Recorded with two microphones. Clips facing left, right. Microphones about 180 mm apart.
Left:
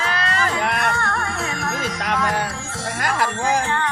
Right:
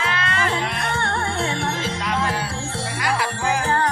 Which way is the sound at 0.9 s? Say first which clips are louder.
Left 1 dB; 30° right (ahead or behind).